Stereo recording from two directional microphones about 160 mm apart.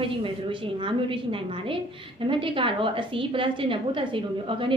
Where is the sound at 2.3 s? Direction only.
30° right (ahead or behind).